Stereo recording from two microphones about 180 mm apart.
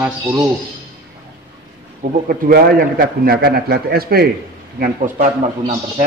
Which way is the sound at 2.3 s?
55° right (ahead or behind).